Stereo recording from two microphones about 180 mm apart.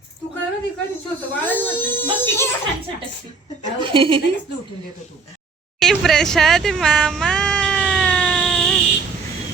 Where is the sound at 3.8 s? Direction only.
30° right (ahead or behind).